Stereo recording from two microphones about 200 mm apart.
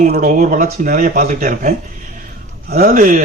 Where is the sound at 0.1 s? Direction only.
40° right (ahead or behind).